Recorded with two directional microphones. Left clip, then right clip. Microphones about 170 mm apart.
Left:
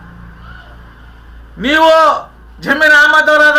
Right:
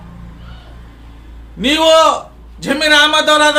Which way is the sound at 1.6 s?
10° right (ahead or behind).